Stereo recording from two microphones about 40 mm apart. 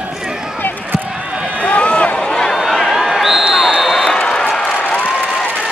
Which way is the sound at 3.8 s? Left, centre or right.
Centre.